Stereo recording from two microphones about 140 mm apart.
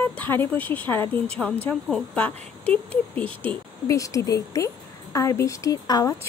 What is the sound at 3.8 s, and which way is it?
A woman's voice, 25° left (ahead or behind).